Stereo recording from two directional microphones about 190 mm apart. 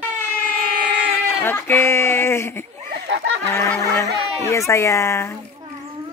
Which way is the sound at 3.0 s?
65° right (ahead or behind).